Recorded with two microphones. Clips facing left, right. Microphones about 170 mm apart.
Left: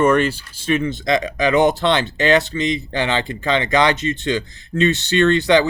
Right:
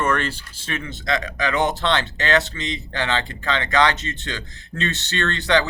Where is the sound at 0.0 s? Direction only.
15° left (ahead or behind).